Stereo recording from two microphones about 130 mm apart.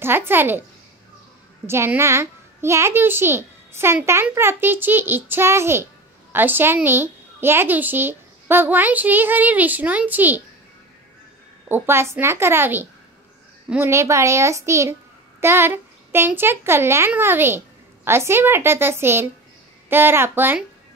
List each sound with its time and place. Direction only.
0.0 s a child's voice: 15° right (ahead or behind)
1.7 s a child's voice: 20° right (ahead or behind)
11.7 s a child's voice: 20° right (ahead or behind)